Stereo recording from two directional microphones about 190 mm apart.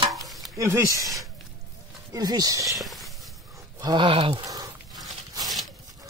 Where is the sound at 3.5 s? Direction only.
25° right (ahead or behind).